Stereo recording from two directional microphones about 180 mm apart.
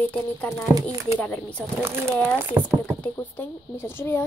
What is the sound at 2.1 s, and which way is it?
Speech, 10° left (ahead or behind).